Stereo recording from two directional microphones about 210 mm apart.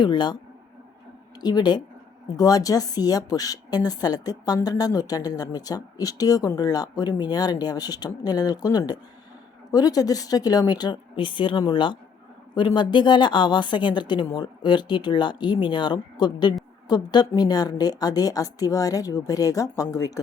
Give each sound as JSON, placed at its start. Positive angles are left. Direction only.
{"t": 0.0, "sound": "a woman's voice", "side_deg": 20}
{"t": 1.4, "sound": "a woman's voice", "side_deg": 20}